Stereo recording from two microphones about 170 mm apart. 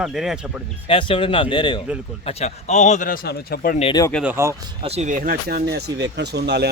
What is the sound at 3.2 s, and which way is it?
Speech, 60° left (ahead or behind).